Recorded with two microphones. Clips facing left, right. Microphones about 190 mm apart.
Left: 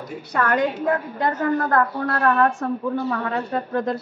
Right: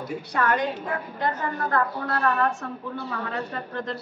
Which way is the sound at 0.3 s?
50° left (ahead or behind).